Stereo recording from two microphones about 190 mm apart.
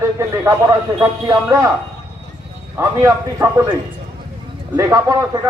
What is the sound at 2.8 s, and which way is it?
Speech, 15° right (ahead or behind).